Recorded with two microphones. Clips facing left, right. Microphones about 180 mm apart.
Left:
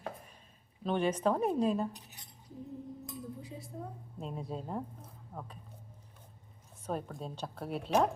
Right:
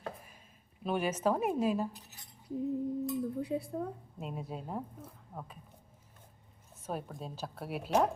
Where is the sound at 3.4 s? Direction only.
60° right (ahead or behind).